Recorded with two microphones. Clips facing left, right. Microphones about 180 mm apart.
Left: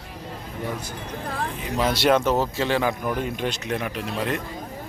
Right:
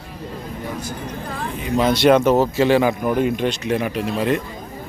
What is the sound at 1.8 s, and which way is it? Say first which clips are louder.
Speech: right 5 dB; 5° left (ahead or behind).